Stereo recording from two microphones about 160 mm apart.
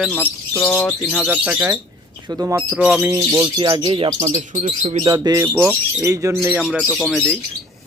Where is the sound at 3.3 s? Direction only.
30° right (ahead or behind).